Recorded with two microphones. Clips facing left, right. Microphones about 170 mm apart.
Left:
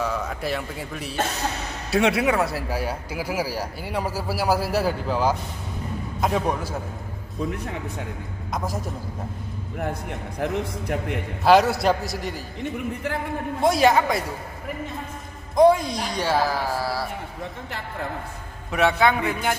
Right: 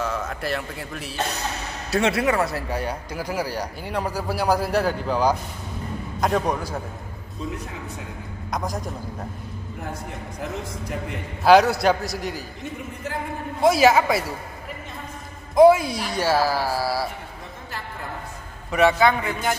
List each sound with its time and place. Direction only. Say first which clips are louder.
0.0 s a man's voice: left 1 dB; centre (ahead or behind)
8.5 s a man's voice: right 1 dB; 5° left (ahead or behind)
10.4 s a man's voice: left 6 dB; 65° left (ahead or behind)
11.4 s a man's voice: right 2 dB; centre (ahead or behind)
13.6 s a man's voice: right 2 dB; 5° right (ahead or behind)
15.5 s speech: right 3 dB; 5° right (ahead or behind)
18.7 s a man's voice: right 2 dB; centre (ahead or behind)